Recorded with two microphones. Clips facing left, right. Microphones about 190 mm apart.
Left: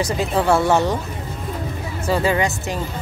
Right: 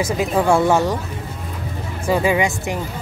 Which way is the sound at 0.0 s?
10° right (ahead or behind).